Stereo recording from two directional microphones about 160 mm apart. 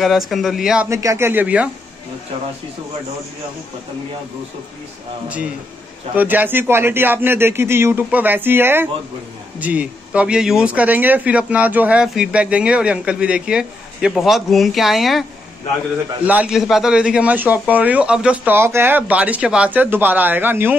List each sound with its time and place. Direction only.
0.3 s speech: centre (ahead or behind)
0.8 s speech: 20° right (ahead or behind)
6.1 s speech: 10° right (ahead or behind)
16.3 s speech: 5° right (ahead or behind)